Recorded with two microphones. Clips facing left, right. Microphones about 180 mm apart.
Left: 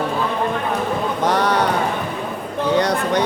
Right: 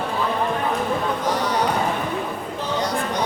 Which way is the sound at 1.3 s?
65° left (ahead or behind).